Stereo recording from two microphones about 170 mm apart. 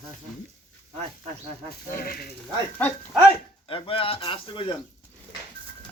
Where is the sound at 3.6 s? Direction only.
30° left (ahead or behind).